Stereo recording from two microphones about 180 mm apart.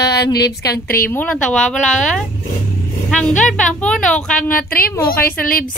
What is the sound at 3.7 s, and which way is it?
Speech, 5° left (ahead or behind).